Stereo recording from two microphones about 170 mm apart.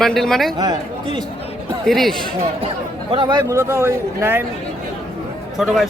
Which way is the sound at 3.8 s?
15° right (ahead or behind).